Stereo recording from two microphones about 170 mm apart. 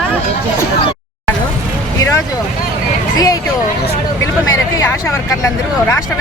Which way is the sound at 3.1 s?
20° left (ahead or behind).